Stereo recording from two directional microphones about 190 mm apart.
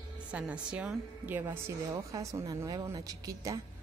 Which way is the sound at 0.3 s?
5° right (ahead or behind).